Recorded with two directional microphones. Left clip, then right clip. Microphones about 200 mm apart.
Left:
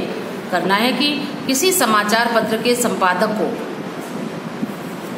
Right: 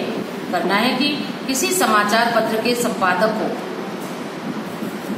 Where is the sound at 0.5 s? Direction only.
55° left (ahead or behind).